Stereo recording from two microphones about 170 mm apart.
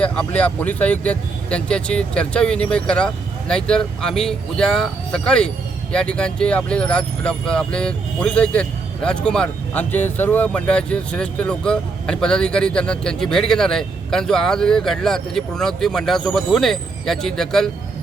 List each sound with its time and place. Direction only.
0.0 s speech: 10° left (ahead or behind)